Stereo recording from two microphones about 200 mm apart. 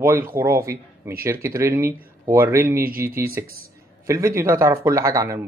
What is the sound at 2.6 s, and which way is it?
Speech, 45° right (ahead or behind).